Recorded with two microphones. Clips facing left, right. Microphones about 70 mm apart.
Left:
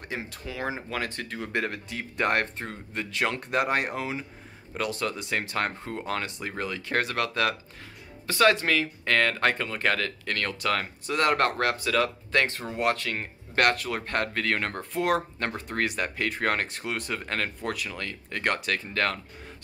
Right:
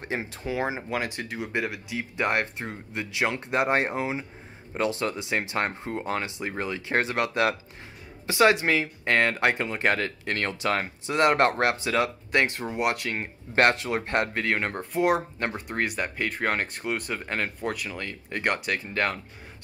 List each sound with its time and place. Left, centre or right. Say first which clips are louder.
0.0 s speech: right 4 dB; right
14.8 s speech: right 4 dB; centre